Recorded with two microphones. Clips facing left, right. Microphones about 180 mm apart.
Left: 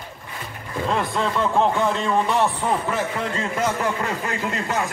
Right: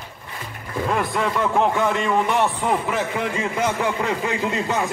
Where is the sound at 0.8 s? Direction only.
10° right (ahead or behind).